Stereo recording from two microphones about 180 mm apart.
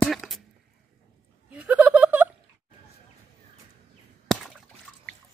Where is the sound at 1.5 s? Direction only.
10° right (ahead or behind).